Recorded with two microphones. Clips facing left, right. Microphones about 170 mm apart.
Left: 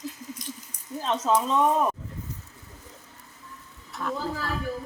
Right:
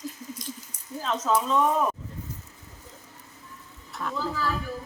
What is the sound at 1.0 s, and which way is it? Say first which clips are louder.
Speech: left 1 dB; 30° left (ahead or behind).